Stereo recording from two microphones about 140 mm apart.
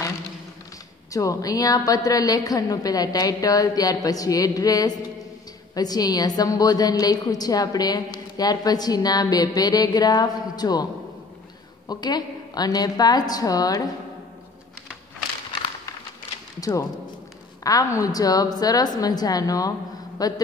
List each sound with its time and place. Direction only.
1.1 s a woman's voice: 25° left (ahead or behind)
11.9 s a woman's voice: 30° left (ahead or behind)
17.6 s a woman's voice: 25° left (ahead or behind)